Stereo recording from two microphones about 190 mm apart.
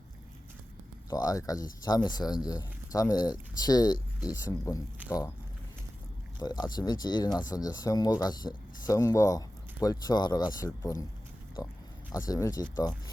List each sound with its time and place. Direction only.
1.1 s speech: 20° left (ahead or behind)
6.4 s speech: 20° left (ahead or behind)